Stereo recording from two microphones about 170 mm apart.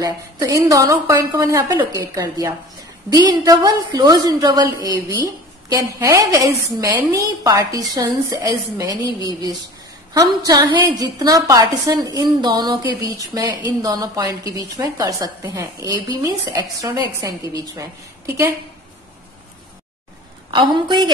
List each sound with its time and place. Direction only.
0.0 s a woman's voice: 20° right (ahead or behind)
20.5 s a woman's voice: 30° right (ahead or behind)